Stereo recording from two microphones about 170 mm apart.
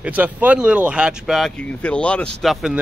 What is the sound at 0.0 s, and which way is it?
Speech, 10° right (ahead or behind).